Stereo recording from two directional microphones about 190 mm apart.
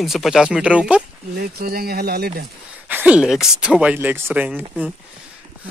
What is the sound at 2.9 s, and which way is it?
Speech, 10° right (ahead or behind).